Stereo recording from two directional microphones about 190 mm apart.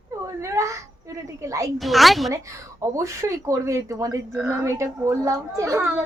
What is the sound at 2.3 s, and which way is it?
A woman's voice, 15° right (ahead or behind).